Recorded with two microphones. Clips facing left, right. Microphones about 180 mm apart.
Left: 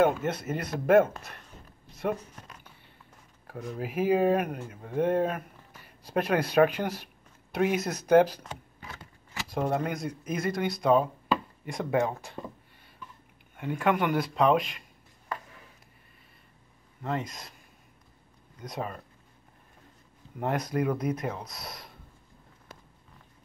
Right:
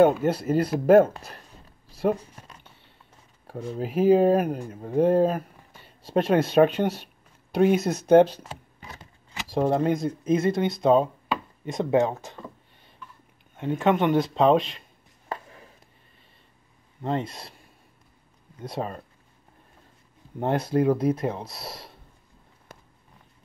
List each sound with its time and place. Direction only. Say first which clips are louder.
0.0 s speech: right 6 dB; 30° right (ahead or behind)
1.9 s a sound: right 6 dB; 30° right (ahead or behind)
3.4 s speech: right 4 dB; 30° right (ahead or behind)
7.5 s a sound: right 6 dB; 30° right (ahead or behind)
9.6 s speech: right 7 dB; 30° right (ahead or behind)
13.6 s speech: right 4 dB; 25° right (ahead or behind)
17.0 s speech: right 5 dB; 30° right (ahead or behind)
18.6 s speech: right 4 dB; 30° right (ahead or behind)
20.3 s speech: right 5 dB; 30° right (ahead or behind)
22.7 s vehicle: right 2 dB; 50° right (ahead or behind)